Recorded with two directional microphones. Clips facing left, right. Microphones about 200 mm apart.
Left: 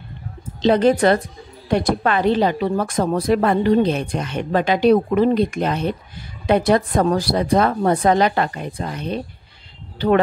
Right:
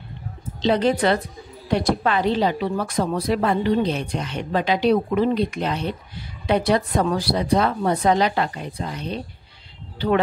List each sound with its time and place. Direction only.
0.6 s speech: 50° left (ahead or behind)